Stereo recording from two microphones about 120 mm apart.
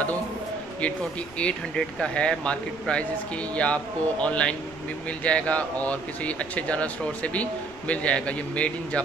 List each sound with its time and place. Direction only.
1.4 s speech: 10° left (ahead or behind)
7.9 s speech: 10° left (ahead or behind)